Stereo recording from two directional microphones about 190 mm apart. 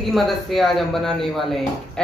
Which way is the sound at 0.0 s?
Centre (ahead or behind).